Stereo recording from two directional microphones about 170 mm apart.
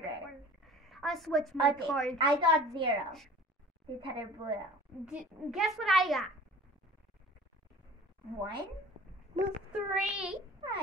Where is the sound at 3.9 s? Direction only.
30° right (ahead or behind).